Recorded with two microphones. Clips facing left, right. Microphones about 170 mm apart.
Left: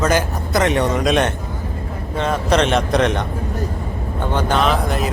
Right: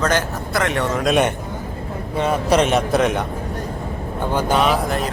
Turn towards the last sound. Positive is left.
turn(degrees=0)  # may be behind; listen again after turning